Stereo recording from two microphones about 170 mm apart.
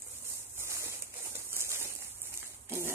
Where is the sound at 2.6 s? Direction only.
15° right (ahead or behind).